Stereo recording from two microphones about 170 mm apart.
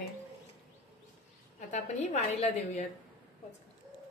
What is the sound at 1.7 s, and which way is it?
A woman's voice, 45° left (ahead or behind).